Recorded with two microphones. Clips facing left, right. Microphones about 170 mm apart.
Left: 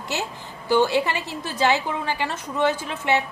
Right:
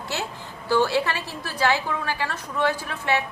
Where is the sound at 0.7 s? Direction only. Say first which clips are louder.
Left 2 dB; 15° left (ahead or behind).